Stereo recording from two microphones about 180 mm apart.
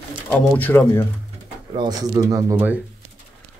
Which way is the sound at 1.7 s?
20° right (ahead or behind).